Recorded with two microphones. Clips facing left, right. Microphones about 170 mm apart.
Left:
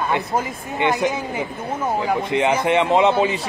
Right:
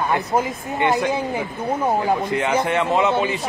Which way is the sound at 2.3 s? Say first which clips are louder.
Left 2 dB; 20° left (ahead or behind).